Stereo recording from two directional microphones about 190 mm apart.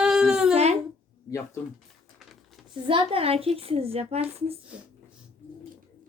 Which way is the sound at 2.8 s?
30° right (ahead or behind).